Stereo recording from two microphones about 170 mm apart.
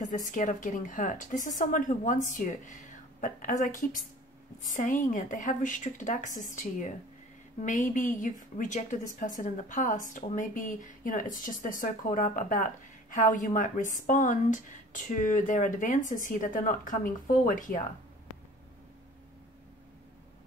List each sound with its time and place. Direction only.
0.0 s a woman's voice: 50° left (ahead or behind)